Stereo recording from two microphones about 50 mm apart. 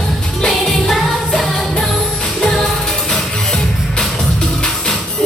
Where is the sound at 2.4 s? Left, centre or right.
Centre.